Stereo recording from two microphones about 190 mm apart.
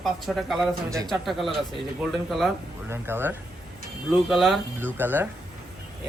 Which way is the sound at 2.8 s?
10° right (ahead or behind).